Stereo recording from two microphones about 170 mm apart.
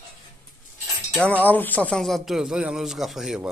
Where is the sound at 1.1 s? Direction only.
5° left (ahead or behind).